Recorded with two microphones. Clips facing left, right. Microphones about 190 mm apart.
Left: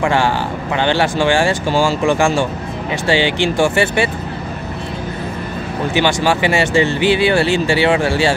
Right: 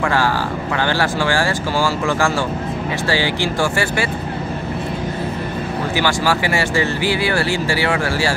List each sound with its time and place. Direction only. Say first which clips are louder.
0.0 s speech: left 2 dB; 20° left (ahead or behind)
5.9 s speech: left 4 dB; 20° left (ahead or behind)